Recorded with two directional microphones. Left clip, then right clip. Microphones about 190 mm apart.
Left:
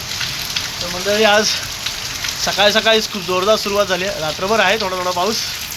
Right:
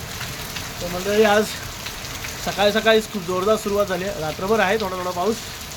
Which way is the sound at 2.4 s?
10° right (ahead or behind).